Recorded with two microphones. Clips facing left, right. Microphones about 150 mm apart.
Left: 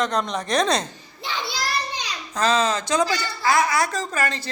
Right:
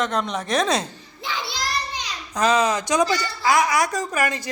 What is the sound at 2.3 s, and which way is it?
Speech, 15° right (ahead or behind).